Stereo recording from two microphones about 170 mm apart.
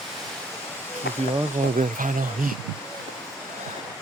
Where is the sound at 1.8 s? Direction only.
50° right (ahead or behind).